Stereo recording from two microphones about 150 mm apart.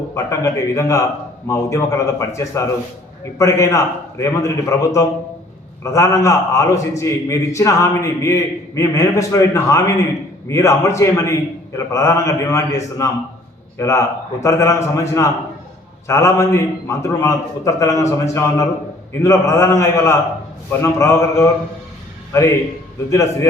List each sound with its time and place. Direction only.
0.1 s a man's voice: 20° left (ahead or behind)